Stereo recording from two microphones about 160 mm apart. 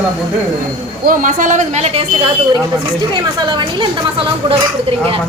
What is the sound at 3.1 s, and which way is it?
Speech, 30° right (ahead or behind).